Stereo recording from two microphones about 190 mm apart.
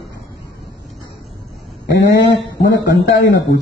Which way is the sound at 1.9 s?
65° left (ahead or behind).